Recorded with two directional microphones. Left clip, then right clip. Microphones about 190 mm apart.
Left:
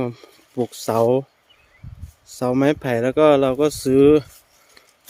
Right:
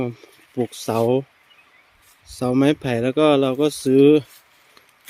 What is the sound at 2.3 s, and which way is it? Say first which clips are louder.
Speech: even; centre (ahead or behind).